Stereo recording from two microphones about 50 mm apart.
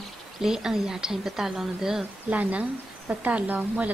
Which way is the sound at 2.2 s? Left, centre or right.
Right.